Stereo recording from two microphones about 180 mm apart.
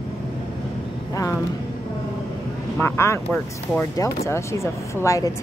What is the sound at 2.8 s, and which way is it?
A woman's voice, 15° left (ahead or behind).